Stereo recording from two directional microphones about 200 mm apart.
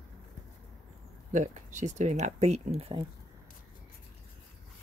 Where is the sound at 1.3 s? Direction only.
35° right (ahead or behind).